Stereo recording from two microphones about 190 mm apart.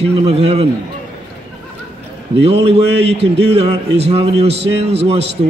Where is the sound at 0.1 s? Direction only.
35° right (ahead or behind).